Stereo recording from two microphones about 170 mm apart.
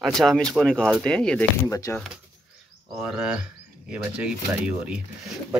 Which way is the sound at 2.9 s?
5° right (ahead or behind).